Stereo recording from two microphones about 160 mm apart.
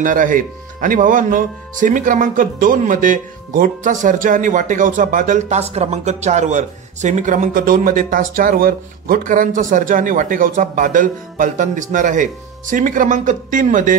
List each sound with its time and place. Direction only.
0.0 s speech: 55° right (ahead or behind)